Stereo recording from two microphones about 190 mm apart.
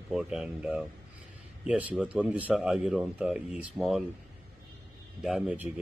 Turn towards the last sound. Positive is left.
turn(degrees=-5)  # may be behind; listen again after turning